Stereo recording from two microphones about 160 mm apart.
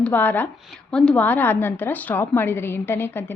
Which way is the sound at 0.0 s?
10° left (ahead or behind).